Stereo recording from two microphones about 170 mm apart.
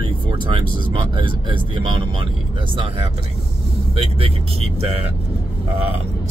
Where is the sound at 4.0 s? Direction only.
35° right (ahead or behind).